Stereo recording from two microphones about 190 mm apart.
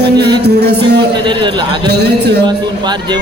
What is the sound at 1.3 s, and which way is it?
Speech, 25° right (ahead or behind).